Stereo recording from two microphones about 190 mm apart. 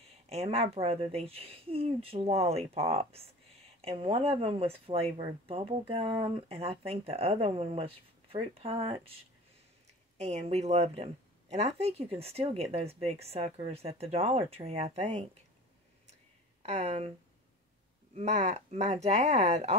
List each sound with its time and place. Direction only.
0.3 s speech: 35° right (ahead or behind)
10.1 s speech: 35° right (ahead or behind)
16.6 s speech: 35° right (ahead or behind)
18.1 s speech: 35° right (ahead or behind)